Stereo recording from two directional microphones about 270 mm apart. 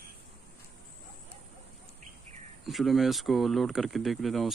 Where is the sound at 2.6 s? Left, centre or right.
Centre.